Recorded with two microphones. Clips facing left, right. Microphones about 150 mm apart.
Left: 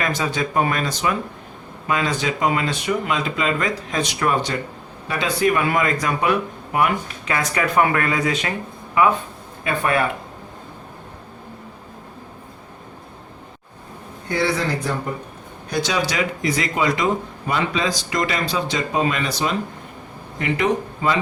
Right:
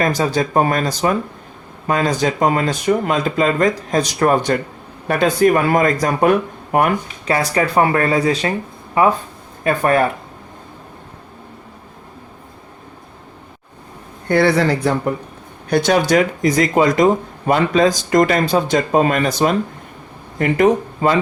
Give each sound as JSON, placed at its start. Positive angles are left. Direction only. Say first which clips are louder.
{"t": 0.0, "sound": "speech", "louder": "right 6 dB", "side_deg": -40}
{"t": 7.3, "sound": "speech", "louder": "right 5 dB", "side_deg": -35}
{"t": 14.3, "sound": "speech", "louder": "right 7 dB", "side_deg": -60}